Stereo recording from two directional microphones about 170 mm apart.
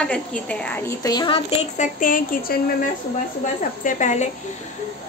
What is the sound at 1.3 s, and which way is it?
A child's voice, 50° left (ahead or behind).